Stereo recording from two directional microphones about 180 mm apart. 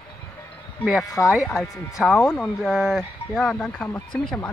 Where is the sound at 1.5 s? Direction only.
20° left (ahead or behind).